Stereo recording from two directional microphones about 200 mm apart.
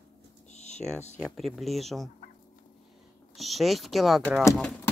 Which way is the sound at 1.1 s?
5° left (ahead or behind).